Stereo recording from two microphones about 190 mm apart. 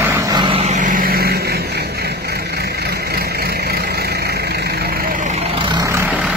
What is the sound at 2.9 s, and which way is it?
Vehicle, 55° right (ahead or behind).